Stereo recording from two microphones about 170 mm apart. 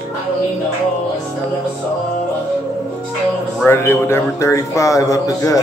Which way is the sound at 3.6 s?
15° left (ahead or behind).